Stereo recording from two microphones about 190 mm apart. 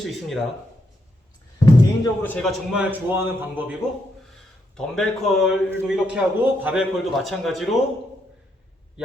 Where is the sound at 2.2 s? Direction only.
10° left (ahead or behind).